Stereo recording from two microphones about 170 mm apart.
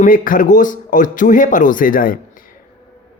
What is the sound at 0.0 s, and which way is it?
Speech, 55° left (ahead or behind).